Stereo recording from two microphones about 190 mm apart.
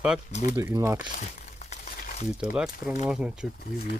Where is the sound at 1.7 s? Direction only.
40° left (ahead or behind).